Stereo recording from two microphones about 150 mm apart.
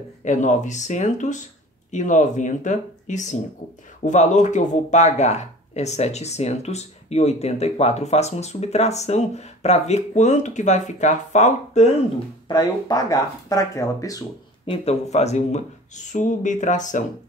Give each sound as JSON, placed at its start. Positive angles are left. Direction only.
{"t": 0.2, "sound": "speech", "side_deg": 55}
{"t": 12.4, "sound": "speech", "side_deg": 25}
{"t": 14.7, "sound": "speech", "side_deg": 45}